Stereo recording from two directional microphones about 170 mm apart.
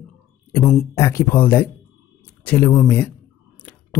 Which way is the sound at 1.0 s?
15° left (ahead or behind).